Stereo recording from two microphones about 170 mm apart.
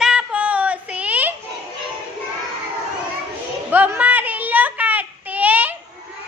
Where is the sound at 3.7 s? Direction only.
10° right (ahead or behind).